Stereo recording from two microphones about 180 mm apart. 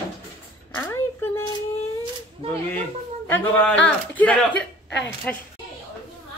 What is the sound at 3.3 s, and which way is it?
A woman's voice, 10° left (ahead or behind).